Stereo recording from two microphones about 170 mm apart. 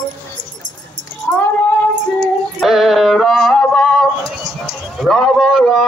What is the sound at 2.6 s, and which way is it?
Music, centre (ahead or behind).